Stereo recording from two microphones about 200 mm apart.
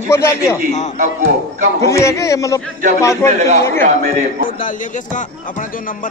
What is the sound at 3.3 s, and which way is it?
Speech, 35° right (ahead or behind).